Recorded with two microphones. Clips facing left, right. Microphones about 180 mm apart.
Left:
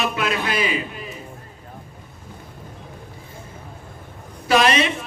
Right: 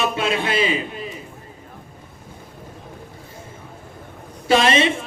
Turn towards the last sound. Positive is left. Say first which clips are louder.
# right 1 dB
turn(degrees=-25)  # may be behind; listen again after turning